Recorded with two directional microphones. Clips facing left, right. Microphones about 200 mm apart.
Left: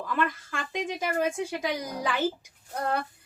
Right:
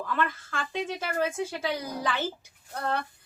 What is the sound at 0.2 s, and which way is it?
A woman's voice, 15° left (ahead or behind).